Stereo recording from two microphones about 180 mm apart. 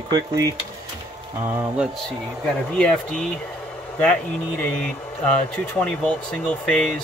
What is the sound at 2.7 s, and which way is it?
Speech, 5° left (ahead or behind).